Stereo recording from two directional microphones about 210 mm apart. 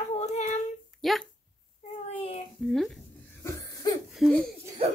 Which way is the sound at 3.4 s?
15° left (ahead or behind).